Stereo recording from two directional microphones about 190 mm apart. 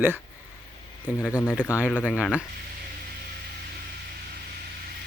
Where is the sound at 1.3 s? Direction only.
15° left (ahead or behind).